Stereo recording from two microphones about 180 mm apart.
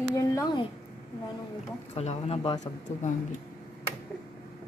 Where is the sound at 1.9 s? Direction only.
35° left (ahead or behind).